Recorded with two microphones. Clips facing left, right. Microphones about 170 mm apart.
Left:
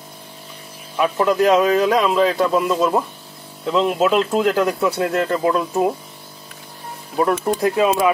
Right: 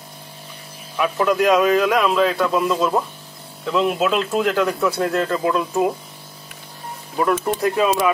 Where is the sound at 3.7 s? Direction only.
30° left (ahead or behind).